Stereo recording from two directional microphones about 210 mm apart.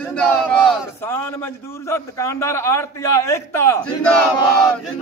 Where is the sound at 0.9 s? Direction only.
10° left (ahead or behind).